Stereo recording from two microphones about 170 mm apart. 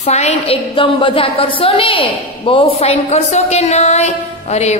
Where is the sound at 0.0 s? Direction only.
40° left (ahead or behind).